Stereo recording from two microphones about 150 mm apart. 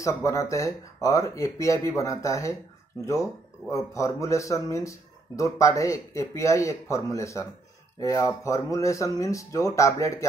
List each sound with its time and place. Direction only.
0.0 s speech: 20° left (ahead or behind)
3.7 s speech: 20° left (ahead or behind)